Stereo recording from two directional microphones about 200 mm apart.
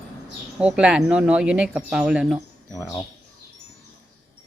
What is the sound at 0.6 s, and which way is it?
A woman's voice, 5° right (ahead or behind).